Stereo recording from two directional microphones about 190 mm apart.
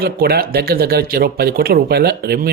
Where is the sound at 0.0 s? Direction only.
55° right (ahead or behind).